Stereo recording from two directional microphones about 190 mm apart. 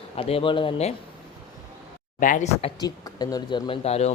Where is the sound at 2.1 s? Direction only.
45° left (ahead or behind).